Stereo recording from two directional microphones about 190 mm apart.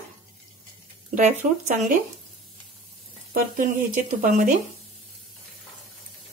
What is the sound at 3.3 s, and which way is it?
Speech, 45° right (ahead or behind).